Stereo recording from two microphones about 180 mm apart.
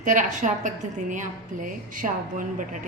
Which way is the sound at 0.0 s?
45° right (ahead or behind).